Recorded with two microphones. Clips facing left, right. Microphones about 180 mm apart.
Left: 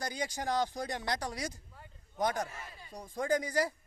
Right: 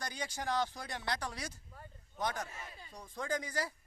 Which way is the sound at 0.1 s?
15° left (ahead or behind).